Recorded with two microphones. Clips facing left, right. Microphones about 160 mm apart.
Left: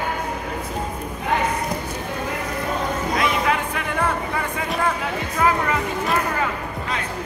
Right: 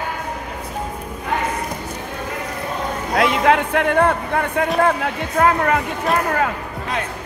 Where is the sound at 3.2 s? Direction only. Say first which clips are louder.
Right 8 dB; 75° right (ahead or behind).